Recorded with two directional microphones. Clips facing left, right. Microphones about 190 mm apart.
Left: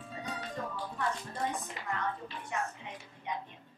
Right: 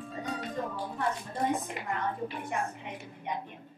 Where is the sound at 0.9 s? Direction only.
25° right (ahead or behind).